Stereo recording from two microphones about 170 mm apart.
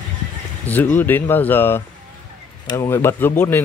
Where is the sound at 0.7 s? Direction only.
10° left (ahead or behind).